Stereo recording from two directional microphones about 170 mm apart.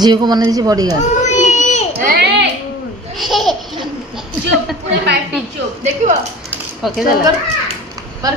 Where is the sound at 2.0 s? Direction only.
60° right (ahead or behind).